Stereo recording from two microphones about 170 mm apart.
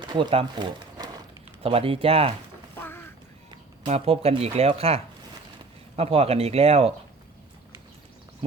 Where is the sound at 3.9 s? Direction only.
35° right (ahead or behind).